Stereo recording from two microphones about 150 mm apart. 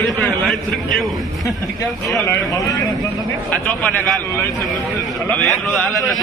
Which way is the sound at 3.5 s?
10° left (ahead or behind).